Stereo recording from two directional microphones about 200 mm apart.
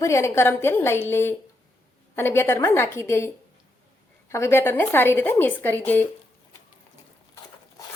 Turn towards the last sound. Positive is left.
turn(degrees=10)  # may be behind; listen again after turning